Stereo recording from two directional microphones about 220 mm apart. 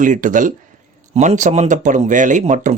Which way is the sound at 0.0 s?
35° right (ahead or behind).